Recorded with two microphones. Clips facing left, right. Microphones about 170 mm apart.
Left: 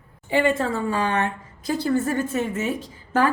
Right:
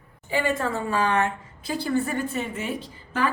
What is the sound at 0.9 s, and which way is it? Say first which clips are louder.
Speech: even; 30° left (ahead or behind).